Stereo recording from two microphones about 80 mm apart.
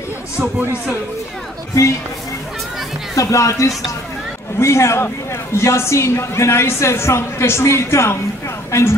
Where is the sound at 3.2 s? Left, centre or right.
Left.